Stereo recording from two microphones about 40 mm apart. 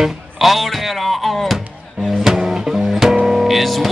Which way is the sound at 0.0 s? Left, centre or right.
Centre.